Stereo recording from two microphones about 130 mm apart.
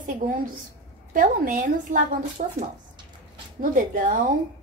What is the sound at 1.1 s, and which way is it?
A woman's voice, 90° right.